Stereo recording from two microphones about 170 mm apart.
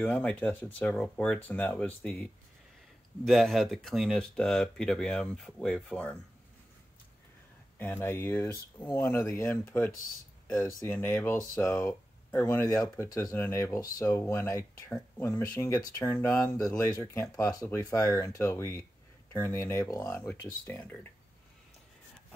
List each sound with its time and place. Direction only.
0.0 s speech: 10° left (ahead or behind)
3.3 s speech: centre (ahead or behind)
7.8 s speech: 15° left (ahead or behind)